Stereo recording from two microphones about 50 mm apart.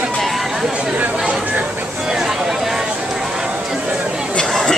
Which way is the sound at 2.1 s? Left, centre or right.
Centre.